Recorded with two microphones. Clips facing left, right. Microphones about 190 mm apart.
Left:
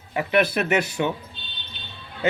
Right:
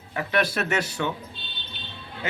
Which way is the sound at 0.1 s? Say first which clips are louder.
Left 4 dB; 15° left (ahead or behind).